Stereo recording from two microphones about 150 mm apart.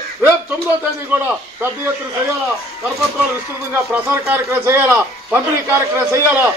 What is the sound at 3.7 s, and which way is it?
A man's voice, 15° right (ahead or behind).